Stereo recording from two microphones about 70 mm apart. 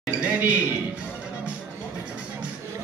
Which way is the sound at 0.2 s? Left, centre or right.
Right.